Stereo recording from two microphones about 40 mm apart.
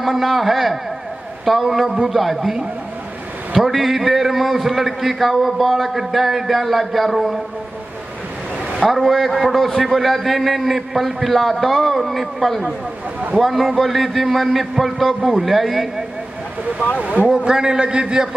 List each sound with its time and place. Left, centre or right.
0.0 s a man's voice: centre
3.5 s a man's voice: centre
8.9 s a man's voice: centre
17.0 s a man's voice: right
17.5 s a man's voice: centre